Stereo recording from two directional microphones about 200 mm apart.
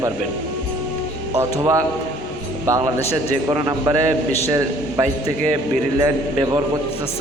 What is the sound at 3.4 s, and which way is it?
A man's voice, 15° right (ahead or behind).